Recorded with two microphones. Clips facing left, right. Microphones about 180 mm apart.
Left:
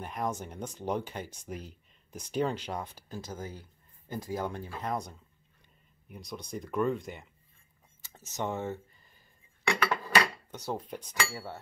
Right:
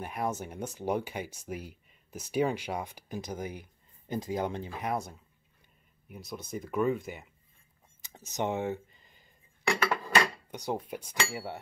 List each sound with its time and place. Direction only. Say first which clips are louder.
0.0 s speech: right 1 dB; 10° right (ahead or behind)
8.0 s a sound: right 3 dB; 15° right (ahead or behind)
9.8 s dishes: even; 15° right (ahead or behind)